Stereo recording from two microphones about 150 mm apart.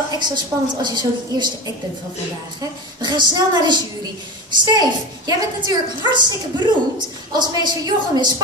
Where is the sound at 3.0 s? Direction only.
30° right (ahead or behind).